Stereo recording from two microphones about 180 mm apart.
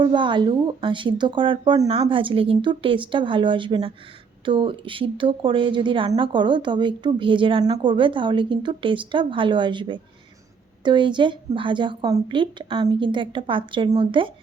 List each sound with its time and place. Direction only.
0.0 s a woman's voice: 25° right (ahead or behind)